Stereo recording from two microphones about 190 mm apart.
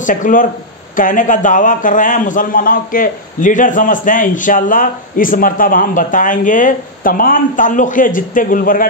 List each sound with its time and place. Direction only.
0.0 s a man's voice: 45° left (ahead or behind)